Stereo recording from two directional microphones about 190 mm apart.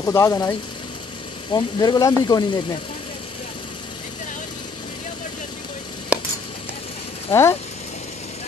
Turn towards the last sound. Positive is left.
turn(degrees=15)  # may be behind; listen again after turning